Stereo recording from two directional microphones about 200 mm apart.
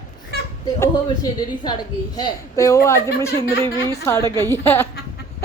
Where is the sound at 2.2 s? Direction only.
20° left (ahead or behind).